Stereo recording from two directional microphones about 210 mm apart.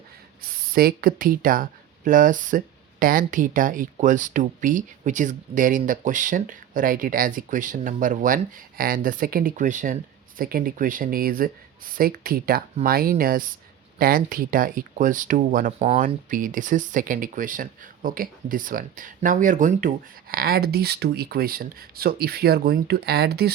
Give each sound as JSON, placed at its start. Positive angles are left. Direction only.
{"t": 0.7, "sound": "speech", "side_deg": -45}